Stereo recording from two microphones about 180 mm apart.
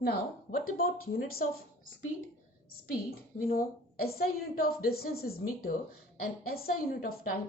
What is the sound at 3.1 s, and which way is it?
A woman's voice, 55° left (ahead or behind).